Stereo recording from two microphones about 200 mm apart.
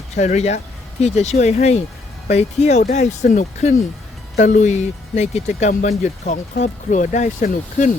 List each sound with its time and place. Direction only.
0.1 s speech: 35° left (ahead or behind)